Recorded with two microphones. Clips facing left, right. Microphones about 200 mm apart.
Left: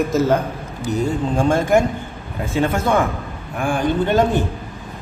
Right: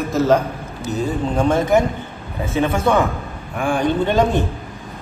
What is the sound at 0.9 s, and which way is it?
A man's voice, 10° left (ahead or behind).